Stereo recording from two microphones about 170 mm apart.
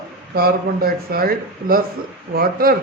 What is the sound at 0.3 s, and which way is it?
A man's voice, 60° right (ahead or behind).